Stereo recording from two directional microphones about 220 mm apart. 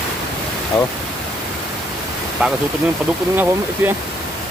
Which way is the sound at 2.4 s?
5° right (ahead or behind).